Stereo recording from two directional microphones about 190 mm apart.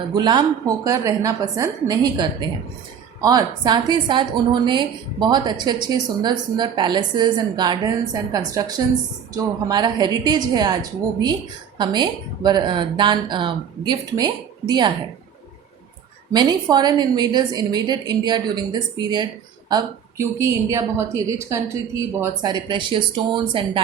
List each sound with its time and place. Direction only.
0.1 s a woman's voice: 20° right (ahead or behind)
11.8 s a woman's voice: 25° right (ahead or behind)
16.3 s a woman's voice: 20° right (ahead or behind)